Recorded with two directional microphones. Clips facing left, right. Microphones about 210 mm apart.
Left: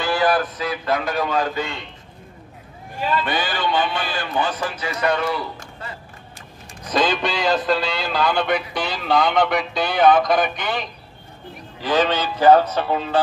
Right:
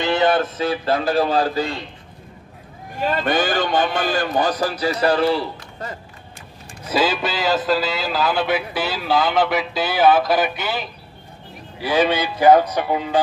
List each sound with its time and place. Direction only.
0.0 s speech: 20° right (ahead or behind)
3.0 s a man's voice: 45° right (ahead or behind)
6.8 s a man's voice: 5° right (ahead or behind)